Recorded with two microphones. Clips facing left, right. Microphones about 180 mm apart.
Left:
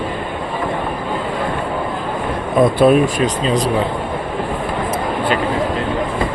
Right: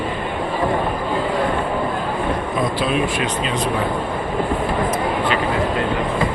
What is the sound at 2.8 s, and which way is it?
Speech, 45° left (ahead or behind).